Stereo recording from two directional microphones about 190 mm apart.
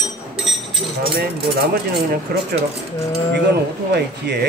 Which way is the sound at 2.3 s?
60° right (ahead or behind).